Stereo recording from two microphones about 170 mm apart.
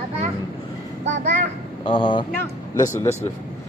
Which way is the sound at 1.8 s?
30° left (ahead or behind).